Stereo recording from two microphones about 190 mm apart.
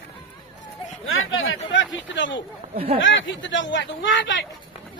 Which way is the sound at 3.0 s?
80° left.